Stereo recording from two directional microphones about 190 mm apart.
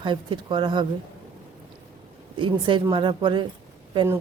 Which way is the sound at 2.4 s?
25° right (ahead or behind).